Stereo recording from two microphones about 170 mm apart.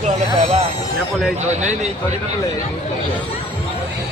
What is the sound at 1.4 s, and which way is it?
Speech, 45° right (ahead or behind).